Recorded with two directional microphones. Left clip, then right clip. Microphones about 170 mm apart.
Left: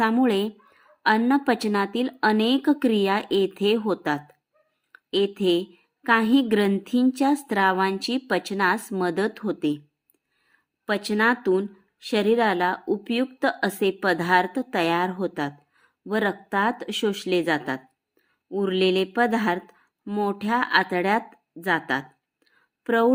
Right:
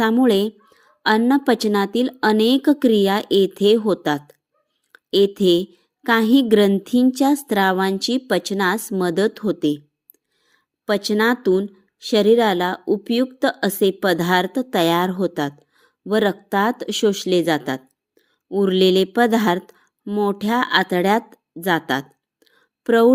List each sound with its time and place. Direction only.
0.0 s speech: 25° right (ahead or behind)